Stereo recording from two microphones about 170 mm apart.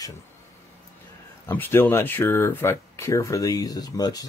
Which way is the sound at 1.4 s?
15° left (ahead or behind).